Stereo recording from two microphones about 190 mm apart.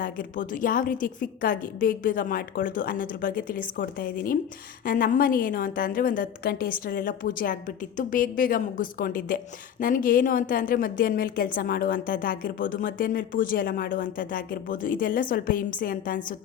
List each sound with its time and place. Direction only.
0.0 s a woman's voice: 45° left (ahead or behind)